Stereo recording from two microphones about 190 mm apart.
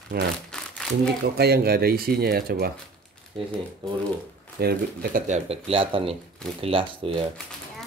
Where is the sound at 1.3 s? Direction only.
55° right (ahead or behind).